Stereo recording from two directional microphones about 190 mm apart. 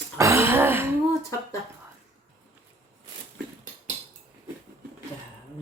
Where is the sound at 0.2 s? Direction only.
15° right (ahead or behind).